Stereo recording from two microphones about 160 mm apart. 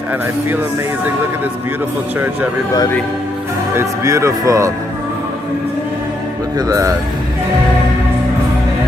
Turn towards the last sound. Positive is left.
turn(degrees=-20)  # may be behind; listen again after turning